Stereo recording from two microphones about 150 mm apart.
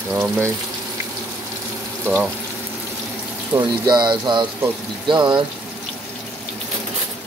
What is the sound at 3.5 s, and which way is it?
Speech, 25° right (ahead or behind).